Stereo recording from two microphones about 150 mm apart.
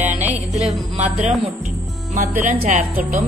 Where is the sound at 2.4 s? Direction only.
55° right (ahead or behind).